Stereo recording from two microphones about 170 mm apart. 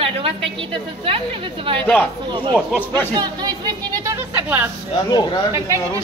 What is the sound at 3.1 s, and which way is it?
Speech, 25° right (ahead or behind).